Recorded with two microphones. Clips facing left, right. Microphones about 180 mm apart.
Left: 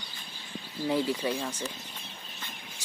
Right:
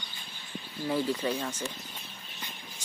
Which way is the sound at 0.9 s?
10° left (ahead or behind).